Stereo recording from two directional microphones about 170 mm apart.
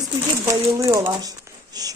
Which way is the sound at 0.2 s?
15° right (ahead or behind).